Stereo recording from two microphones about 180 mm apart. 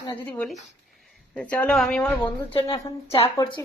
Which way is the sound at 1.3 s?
5° left (ahead or behind).